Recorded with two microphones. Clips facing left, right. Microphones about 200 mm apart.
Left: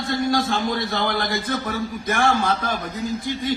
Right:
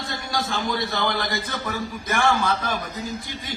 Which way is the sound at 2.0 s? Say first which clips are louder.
Left 1 dB; 55° left (ahead or behind).